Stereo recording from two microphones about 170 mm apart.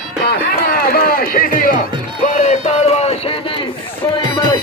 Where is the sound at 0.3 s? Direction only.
65° left (ahead or behind).